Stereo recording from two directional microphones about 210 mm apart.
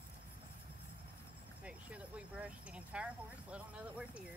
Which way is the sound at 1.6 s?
5° right (ahead or behind).